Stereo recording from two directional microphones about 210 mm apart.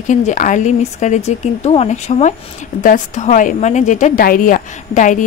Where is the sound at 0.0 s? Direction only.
35° left (ahead or behind).